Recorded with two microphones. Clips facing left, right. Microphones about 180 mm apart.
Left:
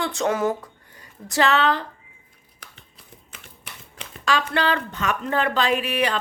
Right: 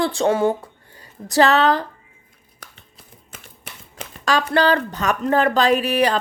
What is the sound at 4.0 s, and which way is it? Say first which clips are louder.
Speech: right 3 dB; 40° right (ahead or behind).